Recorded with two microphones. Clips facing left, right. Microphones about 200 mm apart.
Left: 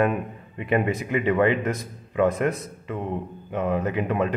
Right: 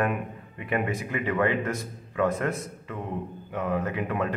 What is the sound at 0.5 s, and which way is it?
A man's voice, 25° left (ahead or behind).